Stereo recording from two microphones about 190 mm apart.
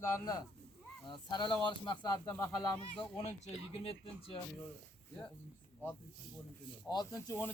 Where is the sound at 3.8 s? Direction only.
30° left (ahead or behind).